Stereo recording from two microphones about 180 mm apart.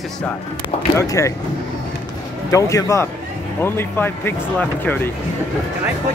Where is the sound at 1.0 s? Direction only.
15° left (ahead or behind).